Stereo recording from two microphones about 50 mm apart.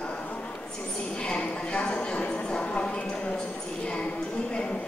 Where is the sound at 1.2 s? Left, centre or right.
Centre.